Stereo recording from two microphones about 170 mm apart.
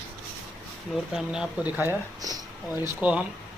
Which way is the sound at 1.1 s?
5° right (ahead or behind).